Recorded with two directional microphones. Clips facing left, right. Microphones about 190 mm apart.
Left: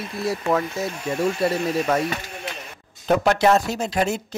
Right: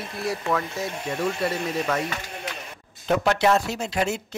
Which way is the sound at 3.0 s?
40° left (ahead or behind).